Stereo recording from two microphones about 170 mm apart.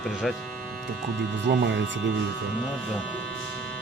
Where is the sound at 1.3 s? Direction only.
90° right.